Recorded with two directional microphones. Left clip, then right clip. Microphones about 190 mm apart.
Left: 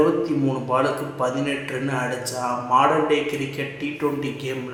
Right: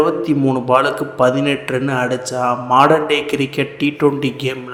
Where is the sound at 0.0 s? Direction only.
35° right (ahead or behind).